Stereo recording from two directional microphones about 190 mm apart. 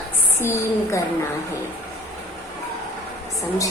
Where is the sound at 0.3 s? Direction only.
15° left (ahead or behind).